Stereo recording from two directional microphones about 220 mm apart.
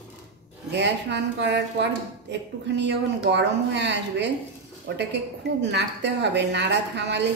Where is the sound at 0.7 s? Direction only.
50° right (ahead or behind).